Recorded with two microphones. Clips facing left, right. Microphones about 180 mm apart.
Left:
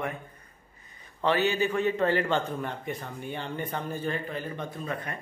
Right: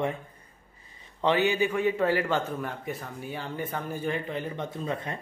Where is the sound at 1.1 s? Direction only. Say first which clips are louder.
Right 1 dB; 15° right (ahead or behind).